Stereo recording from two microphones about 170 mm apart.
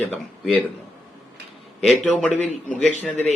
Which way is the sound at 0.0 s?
10° left (ahead or behind).